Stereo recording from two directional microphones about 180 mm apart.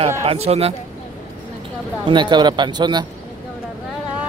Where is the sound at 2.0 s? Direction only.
25° right (ahead or behind).